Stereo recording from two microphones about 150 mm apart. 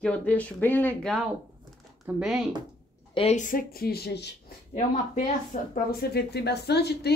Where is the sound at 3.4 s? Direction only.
65° left (ahead or behind); by 4.3 s 90° left.